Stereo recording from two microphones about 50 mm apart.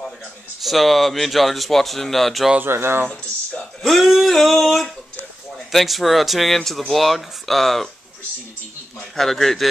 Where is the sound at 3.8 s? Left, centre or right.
Centre.